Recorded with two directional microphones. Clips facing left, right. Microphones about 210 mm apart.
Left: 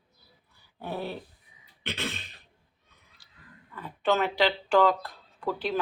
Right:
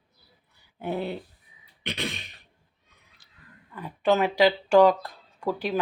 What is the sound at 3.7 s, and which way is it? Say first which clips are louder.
Speech: right 3 dB; 15° right (ahead or behind).